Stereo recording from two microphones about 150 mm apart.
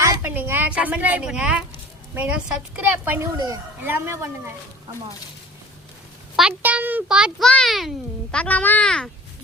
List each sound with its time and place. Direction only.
0.0 s a woman's voice: 15° right (ahead or behind)
3.3 s speech: 25° right (ahead or behind)
3.8 s a woman's voice: 15° right (ahead or behind)
6.3 s a child's voice: 10° right (ahead or behind)